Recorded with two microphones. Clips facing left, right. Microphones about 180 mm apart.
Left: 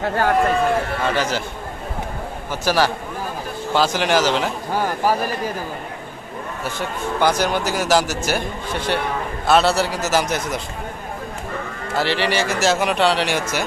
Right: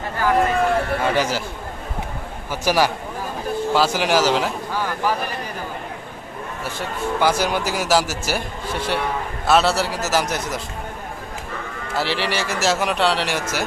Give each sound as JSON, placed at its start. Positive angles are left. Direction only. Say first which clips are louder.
{"t": 0.0, "sound": "speech", "louder": "left 2 dB", "side_deg": 65}
{"t": 1.0, "sound": "a man's voice", "louder": "right 1 dB", "side_deg": -10}
{"t": 2.5, "sound": "a man's voice", "louder": "even", "side_deg": -10}
{"t": 4.7, "sound": "a sound", "louder": "left 5 dB", "side_deg": 45}
{"t": 7.2, "sound": "a man's voice", "louder": "left 1 dB", "side_deg": -5}
{"t": 11.9, "sound": "a man's voice", "louder": "left 3 dB", "side_deg": 0}